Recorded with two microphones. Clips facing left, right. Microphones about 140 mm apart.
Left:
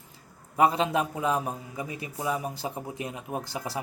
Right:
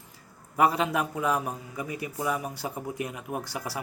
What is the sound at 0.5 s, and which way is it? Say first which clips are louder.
A man's voice: left 1 dB; 25° left (ahead or behind).